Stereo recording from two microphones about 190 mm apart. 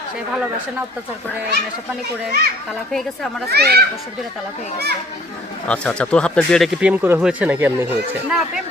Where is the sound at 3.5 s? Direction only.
55° right (ahead or behind).